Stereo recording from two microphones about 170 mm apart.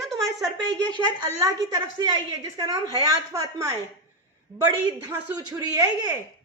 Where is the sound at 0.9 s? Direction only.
25° right (ahead or behind).